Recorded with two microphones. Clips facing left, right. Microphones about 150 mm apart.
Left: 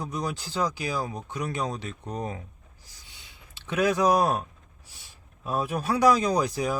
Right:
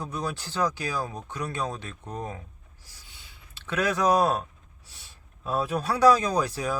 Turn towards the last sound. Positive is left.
turn(degrees=15)  # may be behind; listen again after turning